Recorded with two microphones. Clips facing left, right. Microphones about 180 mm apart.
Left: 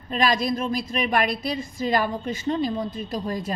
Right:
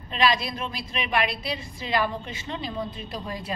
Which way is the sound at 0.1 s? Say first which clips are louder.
Left 2 dB; 45° left (ahead or behind).